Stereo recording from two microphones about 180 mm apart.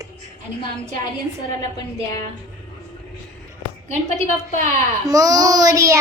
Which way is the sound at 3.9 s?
45° left (ahead or behind).